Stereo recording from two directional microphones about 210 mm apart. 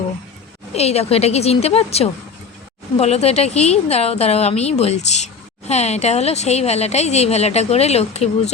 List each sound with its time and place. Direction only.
0.7 s a woman's voice: 30° left (ahead or behind)